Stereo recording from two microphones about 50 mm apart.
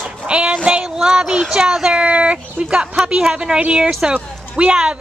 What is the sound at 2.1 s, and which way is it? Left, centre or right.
A woman's voice, right.